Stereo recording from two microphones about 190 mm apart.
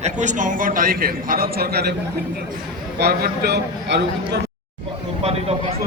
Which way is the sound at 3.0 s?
55° right (ahead or behind).